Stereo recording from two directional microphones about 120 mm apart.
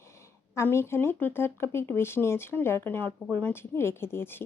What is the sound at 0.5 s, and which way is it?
A woman's voice, 20° left (ahead or behind).